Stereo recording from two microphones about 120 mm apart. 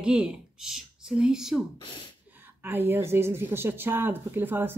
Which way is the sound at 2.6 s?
20° right (ahead or behind).